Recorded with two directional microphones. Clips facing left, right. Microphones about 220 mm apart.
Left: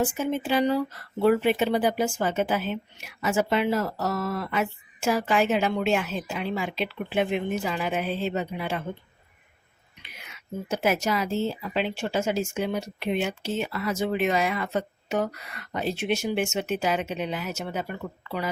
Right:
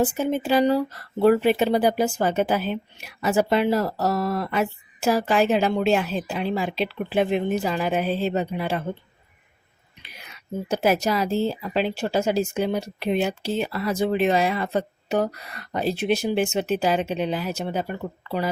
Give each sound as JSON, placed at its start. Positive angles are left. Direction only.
{"t": 0.0, "sound": "speech", "side_deg": -35}
{"t": 10.0, "sound": "speech", "side_deg": -35}